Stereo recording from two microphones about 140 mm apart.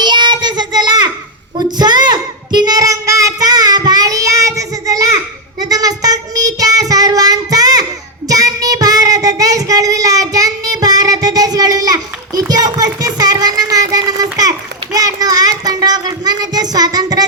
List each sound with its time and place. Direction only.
0.0 s child singing: 30° right (ahead or behind)